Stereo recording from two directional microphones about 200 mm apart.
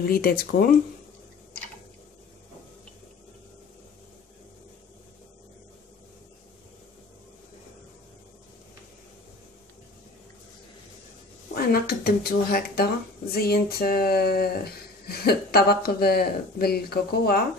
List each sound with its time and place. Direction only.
0.0 s speech: 45° left (ahead or behind)
11.5 s speech: 50° left (ahead or behind)